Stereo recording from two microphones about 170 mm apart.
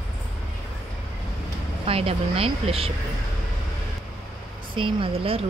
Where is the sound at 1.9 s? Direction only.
35° right (ahead or behind).